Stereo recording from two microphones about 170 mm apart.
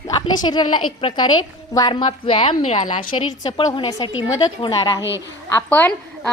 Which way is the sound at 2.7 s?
50° left (ahead or behind).